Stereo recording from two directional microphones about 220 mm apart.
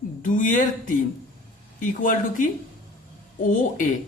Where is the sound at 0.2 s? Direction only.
35° left (ahead or behind).